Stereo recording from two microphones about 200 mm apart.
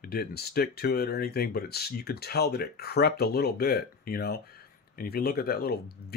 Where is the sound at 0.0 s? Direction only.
50° left (ahead or behind).